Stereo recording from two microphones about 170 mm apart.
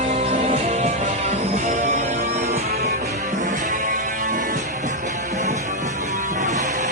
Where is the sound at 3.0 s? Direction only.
45° right (ahead or behind).